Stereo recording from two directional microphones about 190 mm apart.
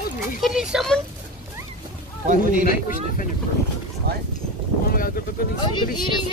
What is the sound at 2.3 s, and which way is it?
Speech, 45° right (ahead or behind).